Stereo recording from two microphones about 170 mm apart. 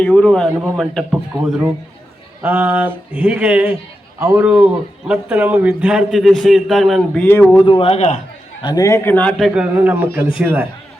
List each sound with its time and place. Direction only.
0.0 s a man's voice: 5° left (ahead or behind)
2.4 s a sound: 10° right (ahead or behind)
5.0 s a man's voice: 5° right (ahead or behind); by 7.6 s 15° left (ahead or behind)
7.6 s speech: 35° left (ahead or behind)
8.6 s a man's voice: 20° left (ahead or behind)
9.6 s a sound: 10° right (ahead or behind)